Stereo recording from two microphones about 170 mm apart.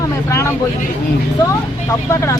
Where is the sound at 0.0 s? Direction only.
15° left (ahead or behind).